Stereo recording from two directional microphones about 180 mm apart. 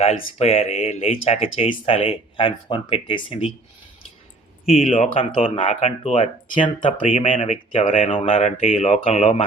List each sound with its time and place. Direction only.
0.0 s speech: 35° left (ahead or behind)
4.6 s speech: 35° left (ahead or behind)
7.0 s speech: 45° left (ahead or behind)
7.3 s speech: 30° left (ahead or behind)